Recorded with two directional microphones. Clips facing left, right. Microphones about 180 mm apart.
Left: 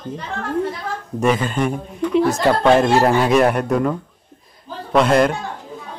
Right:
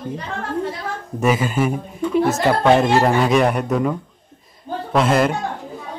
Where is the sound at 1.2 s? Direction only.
5° right (ahead or behind).